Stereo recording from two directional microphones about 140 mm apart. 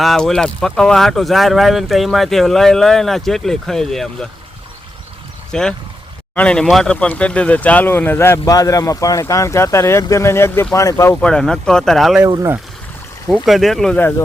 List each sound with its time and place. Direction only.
0.0 s speech: centre (ahead or behind)
5.5 s speech: 5° left (ahead or behind); by 11.1 s 25° left (ahead or behind)
11.1 s speech: 5° left (ahead or behind)
13.2 s speech: 5° right (ahead or behind)